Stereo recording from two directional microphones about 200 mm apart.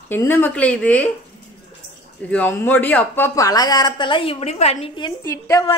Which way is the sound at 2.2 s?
10° left (ahead or behind).